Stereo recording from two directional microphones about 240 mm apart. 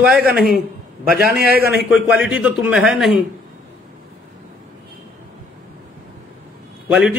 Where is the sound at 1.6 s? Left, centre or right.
Right.